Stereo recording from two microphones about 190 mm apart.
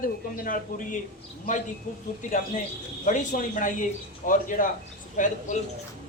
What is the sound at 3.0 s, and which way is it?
Speech, 40° left (ahead or behind).